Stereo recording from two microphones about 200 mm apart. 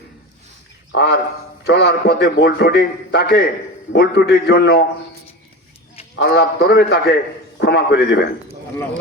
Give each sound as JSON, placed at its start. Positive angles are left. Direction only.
{"t": 0.9, "sound": "a man's voice", "side_deg": 55}
{"t": 6.1, "sound": "a man's voice", "side_deg": 60}